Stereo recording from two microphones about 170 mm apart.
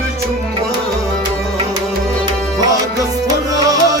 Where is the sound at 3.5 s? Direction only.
20° right (ahead or behind).